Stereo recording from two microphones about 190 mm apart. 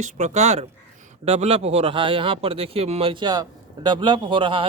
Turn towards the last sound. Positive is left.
turn(degrees=-25)  # may be behind; listen again after turning